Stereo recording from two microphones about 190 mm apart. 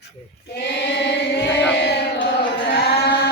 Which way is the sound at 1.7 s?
65° left (ahead or behind).